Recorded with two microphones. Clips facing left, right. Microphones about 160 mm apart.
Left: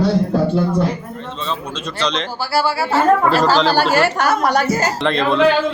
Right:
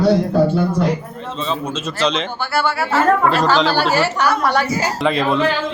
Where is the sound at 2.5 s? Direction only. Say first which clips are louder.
Left 1 dB; 30° left (ahead or behind).